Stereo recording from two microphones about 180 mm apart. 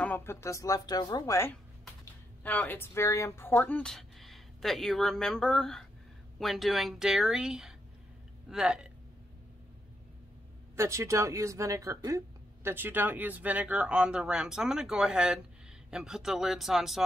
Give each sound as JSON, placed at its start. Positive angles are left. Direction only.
{"t": 0.0, "sound": "speech", "side_deg": 10}
{"t": 10.8, "sound": "speech", "side_deg": -15}